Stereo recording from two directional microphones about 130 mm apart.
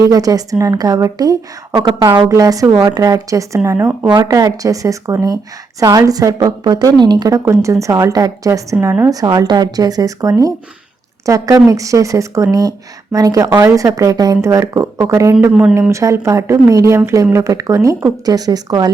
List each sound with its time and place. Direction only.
0.1 s a woman's voice: 30° right (ahead or behind)